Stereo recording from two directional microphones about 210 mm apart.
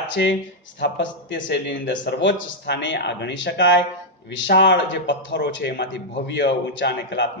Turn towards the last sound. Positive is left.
turn(degrees=55)  # may be behind; listen again after turning